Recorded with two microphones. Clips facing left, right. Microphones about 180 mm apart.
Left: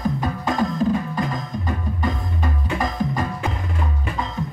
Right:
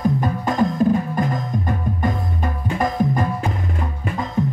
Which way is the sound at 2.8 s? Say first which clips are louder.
Right 5 dB; 55° right (ahead or behind).